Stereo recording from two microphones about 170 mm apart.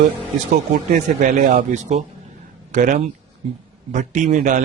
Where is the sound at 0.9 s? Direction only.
50° right (ahead or behind).